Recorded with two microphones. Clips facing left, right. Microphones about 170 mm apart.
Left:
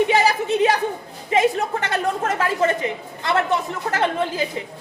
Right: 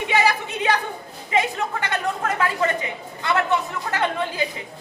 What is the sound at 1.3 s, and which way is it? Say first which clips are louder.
A woman's voice: left 4 dB; 35° left (ahead or behind).